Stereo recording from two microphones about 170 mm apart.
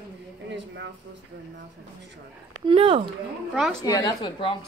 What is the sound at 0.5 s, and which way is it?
Speech, 90° right.